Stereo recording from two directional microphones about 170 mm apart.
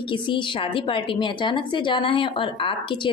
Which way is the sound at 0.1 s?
30° left (ahead or behind).